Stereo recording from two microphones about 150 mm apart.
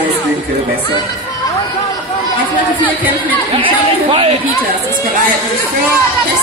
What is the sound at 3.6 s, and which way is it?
Speech, 35° right (ahead or behind).